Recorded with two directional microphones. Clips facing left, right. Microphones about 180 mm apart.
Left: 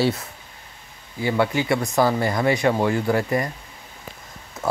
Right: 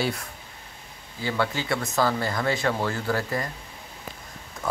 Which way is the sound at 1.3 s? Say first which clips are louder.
Left 6 dB; 15° left (ahead or behind).